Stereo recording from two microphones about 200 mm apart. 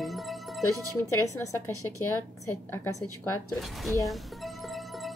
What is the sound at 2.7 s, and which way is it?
Speech, 10° left (ahead or behind).